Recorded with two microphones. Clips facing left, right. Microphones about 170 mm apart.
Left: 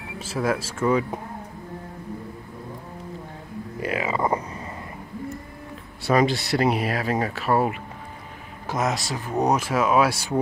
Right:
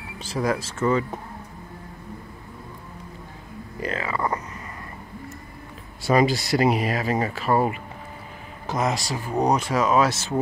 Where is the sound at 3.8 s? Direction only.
10° left (ahead or behind).